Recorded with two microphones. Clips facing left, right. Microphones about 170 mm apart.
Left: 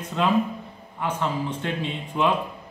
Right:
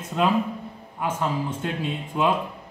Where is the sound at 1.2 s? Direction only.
5° right (ahead or behind).